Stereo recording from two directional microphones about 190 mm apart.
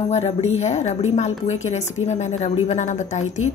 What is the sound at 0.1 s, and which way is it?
A woman's voice, 35° left (ahead or behind).